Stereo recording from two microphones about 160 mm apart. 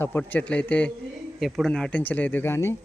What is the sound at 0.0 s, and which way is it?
Speech, 15° left (ahead or behind).